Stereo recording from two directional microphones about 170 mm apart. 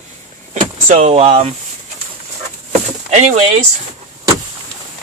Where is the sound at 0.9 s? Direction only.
45° right (ahead or behind).